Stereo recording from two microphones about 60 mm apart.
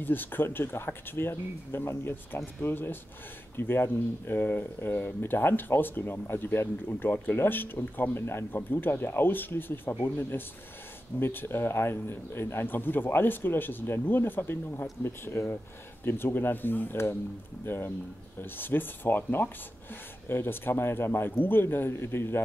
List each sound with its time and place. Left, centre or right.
0.0 s a man's voice: left